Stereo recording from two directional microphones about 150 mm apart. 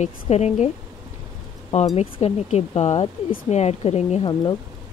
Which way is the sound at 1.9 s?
45° left (ahead or behind).